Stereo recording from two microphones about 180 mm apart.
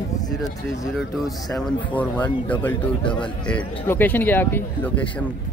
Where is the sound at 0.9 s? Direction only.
Centre (ahead or behind).